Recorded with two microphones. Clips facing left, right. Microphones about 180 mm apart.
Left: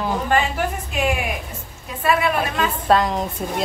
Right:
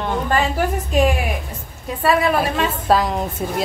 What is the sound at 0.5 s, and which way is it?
Speech, 40° right (ahead or behind).